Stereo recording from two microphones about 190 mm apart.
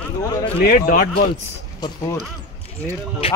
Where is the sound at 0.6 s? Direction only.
50° left (ahead or behind).